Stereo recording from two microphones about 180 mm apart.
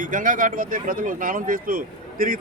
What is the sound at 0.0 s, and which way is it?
Speech, 45° right (ahead or behind).